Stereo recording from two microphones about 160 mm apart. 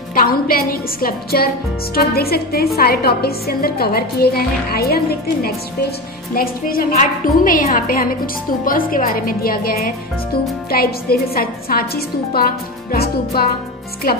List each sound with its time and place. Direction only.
0.1 s a woman's voice: 65° left (ahead or behind)